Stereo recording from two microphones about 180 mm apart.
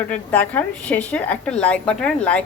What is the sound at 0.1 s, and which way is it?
A woman's voice, 10° left (ahead or behind).